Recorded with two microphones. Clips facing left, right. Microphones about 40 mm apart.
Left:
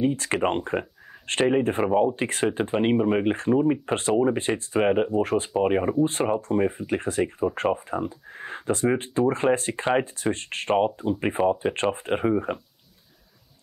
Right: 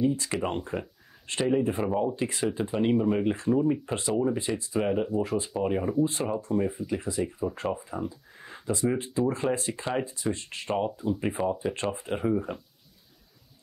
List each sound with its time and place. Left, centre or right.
0.0 s speech: left
11.0 s speech: left